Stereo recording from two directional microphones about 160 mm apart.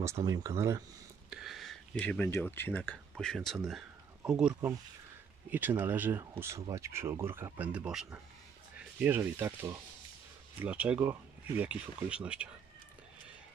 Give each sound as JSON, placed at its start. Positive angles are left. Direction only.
{"t": 0.0, "sound": "speech", "side_deg": -20}
{"t": 1.3, "sound": "speech", "side_deg": 0}